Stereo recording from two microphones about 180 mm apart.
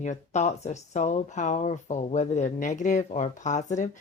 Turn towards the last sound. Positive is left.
turn(degrees=40)  # may be behind; listen again after turning